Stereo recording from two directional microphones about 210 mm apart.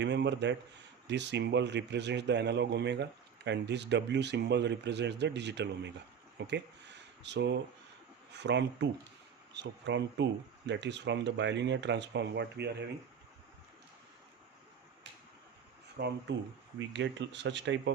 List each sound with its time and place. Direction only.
0.0 s a man's voice: 55° right (ahead or behind)
6.5 s a sound: 55° right (ahead or behind)
8.3 s a man's voice: 55° right (ahead or behind)
16.0 s a man's voice: 55° right (ahead or behind)